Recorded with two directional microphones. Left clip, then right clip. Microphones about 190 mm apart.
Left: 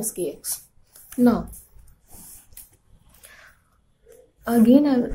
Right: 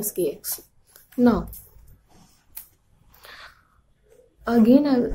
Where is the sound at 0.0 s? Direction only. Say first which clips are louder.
Right 3 dB; 25° right (ahead or behind).